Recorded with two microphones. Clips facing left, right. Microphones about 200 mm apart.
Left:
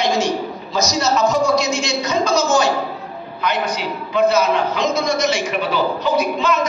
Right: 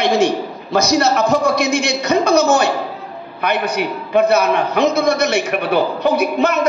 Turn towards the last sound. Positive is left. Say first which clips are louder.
# right 2 dB
turn(degrees=-60)  # may be behind; listen again after turning